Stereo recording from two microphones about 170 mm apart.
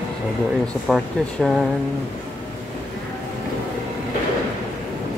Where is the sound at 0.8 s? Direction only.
Centre (ahead or behind).